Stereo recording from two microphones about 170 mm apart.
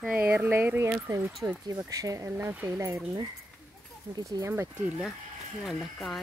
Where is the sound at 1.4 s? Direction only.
20° right (ahead or behind).